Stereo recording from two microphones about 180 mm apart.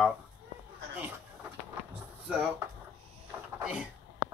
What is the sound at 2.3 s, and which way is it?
Speech, 5° right (ahead or behind).